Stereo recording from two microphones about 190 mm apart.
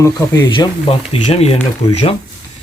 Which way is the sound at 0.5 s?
25° left (ahead or behind).